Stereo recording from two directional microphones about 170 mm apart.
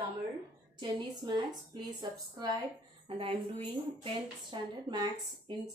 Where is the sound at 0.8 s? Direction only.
25° right (ahead or behind).